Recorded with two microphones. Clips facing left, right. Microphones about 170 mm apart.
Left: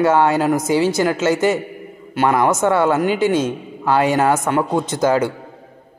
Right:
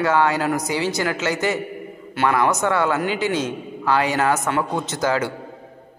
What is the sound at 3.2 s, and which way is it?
Speech, 50° left (ahead or behind).